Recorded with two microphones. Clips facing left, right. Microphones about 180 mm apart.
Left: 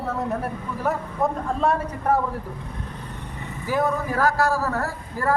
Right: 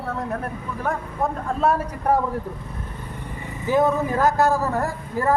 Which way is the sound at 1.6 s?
10° right (ahead or behind).